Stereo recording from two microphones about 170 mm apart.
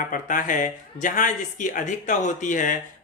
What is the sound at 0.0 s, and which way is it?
Speech, 50° left (ahead or behind).